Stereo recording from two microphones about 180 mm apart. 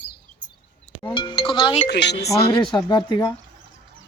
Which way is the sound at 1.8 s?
70° left (ahead or behind).